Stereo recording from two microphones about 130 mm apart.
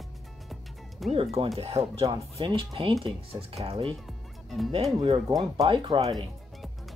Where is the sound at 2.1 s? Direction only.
35° right (ahead or behind).